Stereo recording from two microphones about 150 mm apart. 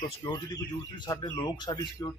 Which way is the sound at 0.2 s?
25° left (ahead or behind).